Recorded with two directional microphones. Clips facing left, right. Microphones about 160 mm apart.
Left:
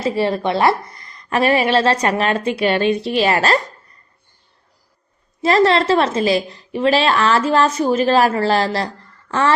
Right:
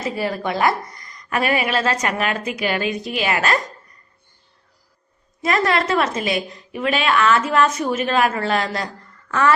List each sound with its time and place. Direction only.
0.0 s a woman's voice: 30° left (ahead or behind)
5.4 s a woman's voice: 30° left (ahead or behind)